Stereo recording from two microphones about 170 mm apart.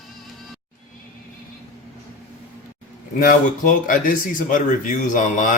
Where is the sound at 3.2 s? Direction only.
55° left (ahead or behind).